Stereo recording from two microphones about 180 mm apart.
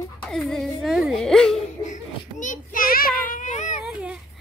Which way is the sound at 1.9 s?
45° left (ahead or behind).